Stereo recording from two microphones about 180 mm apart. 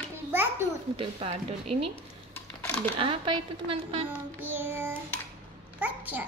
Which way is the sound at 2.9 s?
30° right (ahead or behind).